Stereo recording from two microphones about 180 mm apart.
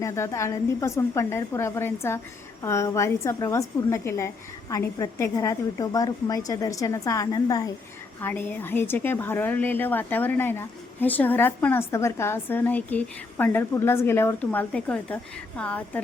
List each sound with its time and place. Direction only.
0.0 s a woman's voice: 15° left (ahead or behind)